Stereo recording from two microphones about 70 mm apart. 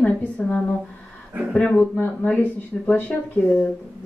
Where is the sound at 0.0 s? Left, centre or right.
Left.